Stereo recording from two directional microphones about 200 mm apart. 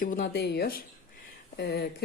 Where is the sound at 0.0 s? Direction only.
45° left (ahead or behind).